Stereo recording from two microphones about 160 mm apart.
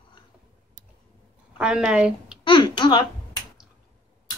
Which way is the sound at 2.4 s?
30° left (ahead or behind).